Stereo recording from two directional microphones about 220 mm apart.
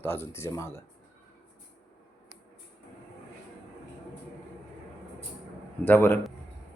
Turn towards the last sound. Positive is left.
turn(degrees=10)  # may be behind; listen again after turning